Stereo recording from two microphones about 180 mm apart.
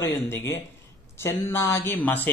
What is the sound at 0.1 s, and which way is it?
A man's voice, 15° left (ahead or behind).